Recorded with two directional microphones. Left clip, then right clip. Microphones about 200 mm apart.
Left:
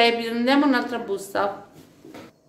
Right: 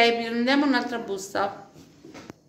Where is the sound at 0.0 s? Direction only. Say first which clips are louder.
Left 1 dB; centre (ahead or behind).